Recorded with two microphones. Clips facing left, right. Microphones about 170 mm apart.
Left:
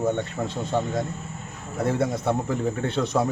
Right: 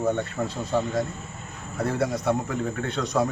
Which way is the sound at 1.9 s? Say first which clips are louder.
Left 1 dB; 25° left (ahead or behind).